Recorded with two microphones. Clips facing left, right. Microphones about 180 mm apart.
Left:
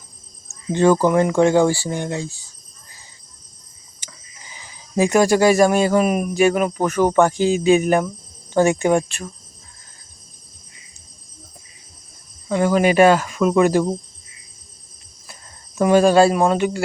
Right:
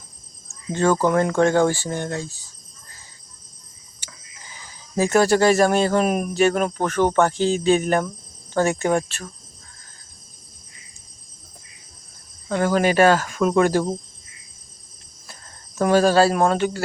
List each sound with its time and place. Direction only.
0.7 s speech: 20° left (ahead or behind)
4.9 s speech: 15° left (ahead or behind)
12.5 s speech: 5° left (ahead or behind)
15.8 s speech: 10° left (ahead or behind)